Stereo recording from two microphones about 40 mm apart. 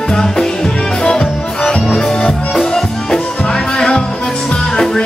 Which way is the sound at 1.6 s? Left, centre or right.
Left.